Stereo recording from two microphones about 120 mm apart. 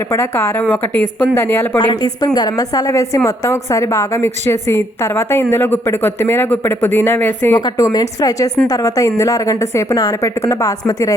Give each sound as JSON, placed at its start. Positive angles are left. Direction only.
{"t": 0.1, "sound": "a woman's voice", "side_deg": 20}
{"t": 1.8, "sound": "a woman's voice", "side_deg": 40}
{"t": 7.6, "sound": "a woman's voice", "side_deg": 30}